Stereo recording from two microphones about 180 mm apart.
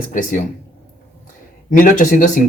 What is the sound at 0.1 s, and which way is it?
Speech, 45° left (ahead or behind).